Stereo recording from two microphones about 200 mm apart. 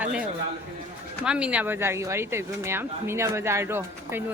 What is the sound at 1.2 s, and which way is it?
Speech, 5° right (ahead or behind).